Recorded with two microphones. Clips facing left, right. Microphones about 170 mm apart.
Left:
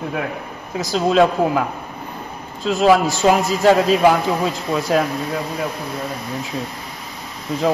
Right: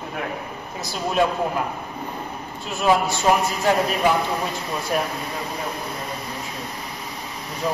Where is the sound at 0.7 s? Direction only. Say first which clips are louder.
Left 7 dB; 90° left.